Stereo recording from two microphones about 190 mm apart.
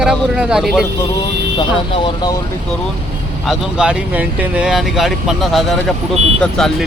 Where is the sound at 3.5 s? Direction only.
5° right (ahead or behind).